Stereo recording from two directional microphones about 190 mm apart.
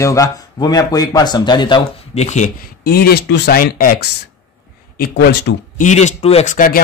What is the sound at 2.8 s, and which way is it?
Speech, 55° left (ahead or behind).